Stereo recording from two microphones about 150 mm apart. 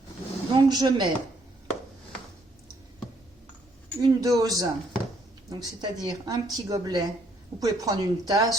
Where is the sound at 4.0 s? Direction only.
25° right (ahead or behind).